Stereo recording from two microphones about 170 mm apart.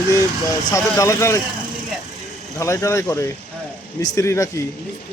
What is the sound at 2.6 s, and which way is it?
Speech, 20° left (ahead or behind).